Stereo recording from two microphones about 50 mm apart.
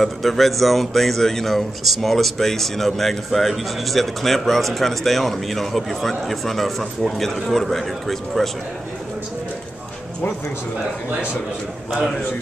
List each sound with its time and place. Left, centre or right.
0.0 s speech: centre
11.1 s a man's voice: right
11.9 s speech: centre